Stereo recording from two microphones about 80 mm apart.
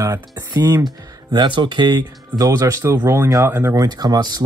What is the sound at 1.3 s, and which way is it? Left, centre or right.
Speech, right.